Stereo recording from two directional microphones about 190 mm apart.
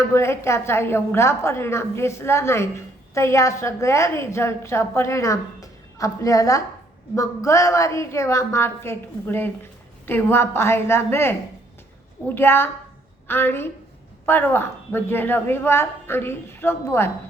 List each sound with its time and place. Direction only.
0.1 s a woman's voice: 15° left (ahead or behind)